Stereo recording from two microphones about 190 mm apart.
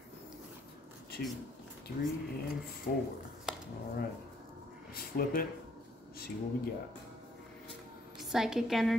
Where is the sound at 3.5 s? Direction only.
5° right (ahead or behind).